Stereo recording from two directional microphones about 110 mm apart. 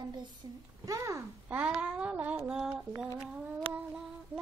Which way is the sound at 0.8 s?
30° right (ahead or behind).